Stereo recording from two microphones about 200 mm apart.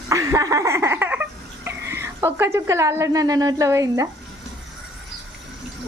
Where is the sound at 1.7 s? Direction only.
15° right (ahead or behind).